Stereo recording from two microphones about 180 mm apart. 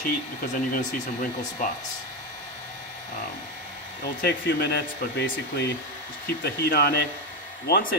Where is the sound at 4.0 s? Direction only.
65° left (ahead or behind).